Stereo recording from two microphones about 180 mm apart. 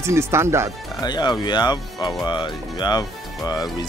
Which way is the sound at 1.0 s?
25° left (ahead or behind).